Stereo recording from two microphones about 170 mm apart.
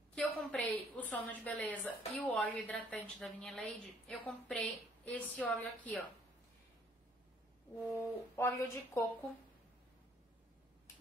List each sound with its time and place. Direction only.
0.1 s a sound: 10° left (ahead or behind)
1.1 s a woman's voice: 10° left (ahead or behind)
7.9 s a woman's voice: 15° left (ahead or behind)